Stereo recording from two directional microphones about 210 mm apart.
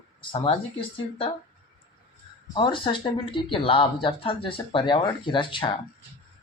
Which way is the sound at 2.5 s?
25° left (ahead or behind).